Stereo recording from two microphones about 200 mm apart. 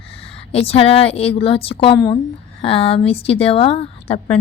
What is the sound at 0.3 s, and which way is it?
A woman's voice, 30° left (ahead or behind).